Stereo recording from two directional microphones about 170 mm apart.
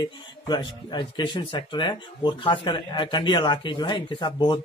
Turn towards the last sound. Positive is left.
turn(degrees=30)  # may be behind; listen again after turning